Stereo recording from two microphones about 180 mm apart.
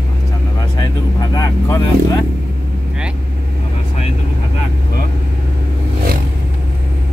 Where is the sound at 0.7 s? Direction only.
20° left (ahead or behind).